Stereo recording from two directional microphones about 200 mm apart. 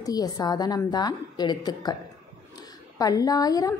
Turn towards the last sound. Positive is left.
turn(degrees=20)  # may be behind; listen again after turning